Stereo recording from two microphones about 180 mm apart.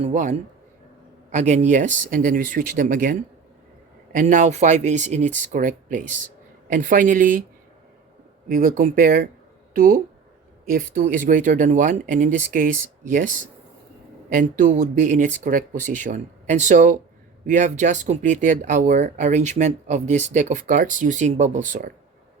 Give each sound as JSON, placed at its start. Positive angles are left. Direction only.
{"t": 0.0, "sound": "speech", "side_deg": -40}
{"t": 8.4, "sound": "speech", "side_deg": -50}